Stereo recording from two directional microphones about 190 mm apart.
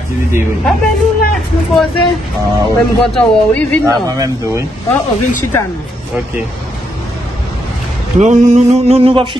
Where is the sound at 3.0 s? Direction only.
5° left (ahead or behind).